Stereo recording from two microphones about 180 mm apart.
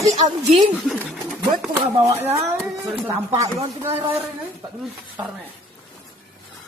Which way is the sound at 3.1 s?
15° right (ahead or behind).